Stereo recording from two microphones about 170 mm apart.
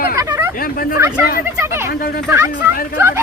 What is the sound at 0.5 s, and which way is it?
Speech, 55° left (ahead or behind).